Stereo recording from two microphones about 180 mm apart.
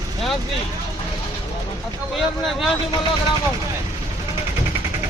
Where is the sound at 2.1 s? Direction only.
Centre (ahead or behind).